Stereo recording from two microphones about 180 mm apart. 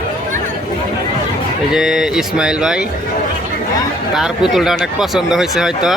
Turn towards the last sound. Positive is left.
turn(degrees=0)  # may be behind; listen again after turning